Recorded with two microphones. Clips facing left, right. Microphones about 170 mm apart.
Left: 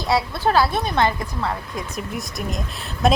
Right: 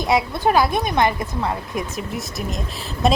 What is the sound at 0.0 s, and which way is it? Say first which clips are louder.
A woman's voice: right 2 dB; 20° right (ahead or behind).